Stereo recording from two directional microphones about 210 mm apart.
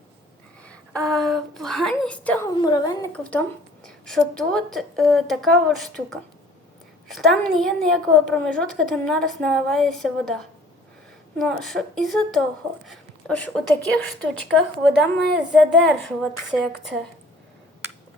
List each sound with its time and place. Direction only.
0.6 s a sound: 5° left (ahead or behind)
2.6 s a woman's voice: 20° left (ahead or behind)
3.1 s a woman's voice: 5° left (ahead or behind)